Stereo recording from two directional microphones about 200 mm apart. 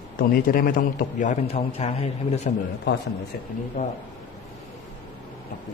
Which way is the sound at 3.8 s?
35° left (ahead or behind).